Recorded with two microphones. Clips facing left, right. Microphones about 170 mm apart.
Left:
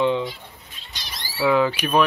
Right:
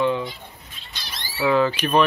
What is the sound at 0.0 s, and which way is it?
Chicken, 20° left (ahead or behind).